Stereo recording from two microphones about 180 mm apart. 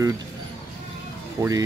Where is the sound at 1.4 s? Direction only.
20° right (ahead or behind).